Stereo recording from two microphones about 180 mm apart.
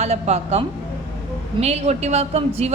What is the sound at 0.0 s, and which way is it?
Speech, 35° right (ahead or behind).